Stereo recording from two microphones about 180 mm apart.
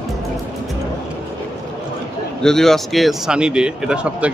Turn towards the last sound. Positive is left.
turn(degrees=-5)  # may be behind; listen again after turning